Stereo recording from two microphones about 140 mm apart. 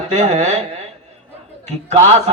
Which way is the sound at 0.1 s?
55° right (ahead or behind).